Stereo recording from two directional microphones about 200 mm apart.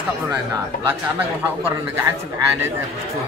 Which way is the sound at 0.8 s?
10° right (ahead or behind).